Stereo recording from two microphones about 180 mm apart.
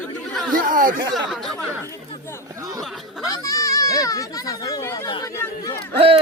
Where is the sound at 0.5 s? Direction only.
50° right (ahead or behind).